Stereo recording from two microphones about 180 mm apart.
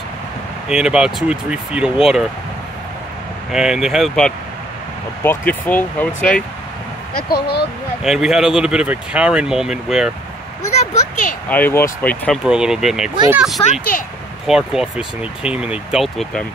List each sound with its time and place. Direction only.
0.7 s speech: 5° right (ahead or behind)
3.5 s speech: 5° right (ahead or behind)
7.2 s speech: 60° left (ahead or behind)
8.0 s speech: 5° right (ahead or behind)
10.7 s speech: 40° left (ahead or behind)
11.4 s speech: 10° left (ahead or behind)
12.4 s speech: 5° right (ahead or behind)
13.7 s speech: 50° left (ahead or behind)
14.4 s speech: 5° right (ahead or behind)